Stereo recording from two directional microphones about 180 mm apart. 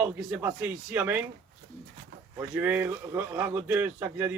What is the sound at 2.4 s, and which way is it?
A man's voice, 10° right (ahead or behind).